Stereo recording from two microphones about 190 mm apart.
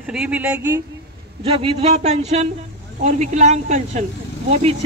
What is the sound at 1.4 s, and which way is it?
Speech, 30° right (ahead or behind).